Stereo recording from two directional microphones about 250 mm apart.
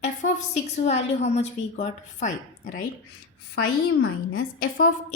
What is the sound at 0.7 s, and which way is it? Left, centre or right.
A woman's voice, left.